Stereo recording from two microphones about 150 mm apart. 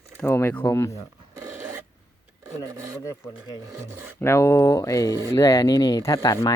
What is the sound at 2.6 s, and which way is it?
Speech, 20° right (ahead or behind).